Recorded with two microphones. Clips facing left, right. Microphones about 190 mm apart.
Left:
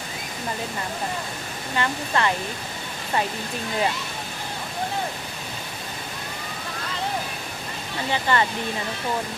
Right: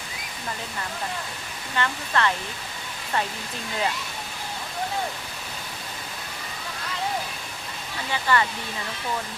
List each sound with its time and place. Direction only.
1.7 s speech: 15° left (ahead or behind)
8.1 s speech: 25° left (ahead or behind)